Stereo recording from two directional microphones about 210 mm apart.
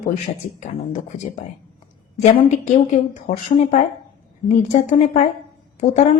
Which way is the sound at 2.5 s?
35° left (ahead or behind).